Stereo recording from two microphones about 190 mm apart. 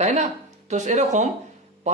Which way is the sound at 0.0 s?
35° right (ahead or behind).